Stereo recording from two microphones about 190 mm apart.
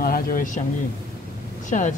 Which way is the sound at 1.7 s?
40° left (ahead or behind).